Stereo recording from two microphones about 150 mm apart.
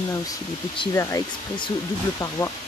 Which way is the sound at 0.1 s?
25° left (ahead or behind).